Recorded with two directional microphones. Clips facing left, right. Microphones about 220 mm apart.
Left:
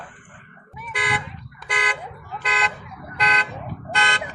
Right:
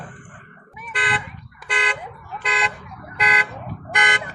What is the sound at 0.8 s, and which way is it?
Car alarm, 10° right (ahead or behind).